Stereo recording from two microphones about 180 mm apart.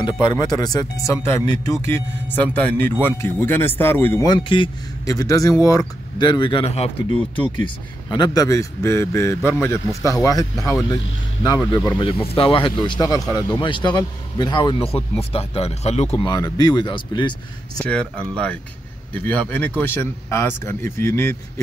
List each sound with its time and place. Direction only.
0.0 s a man's voice: 25° left (ahead or behind)
12.0 s speech: 30° left (ahead or behind)
16.3 s speech: 20° left (ahead or behind)
17.7 s a man's voice: 5° left (ahead or behind)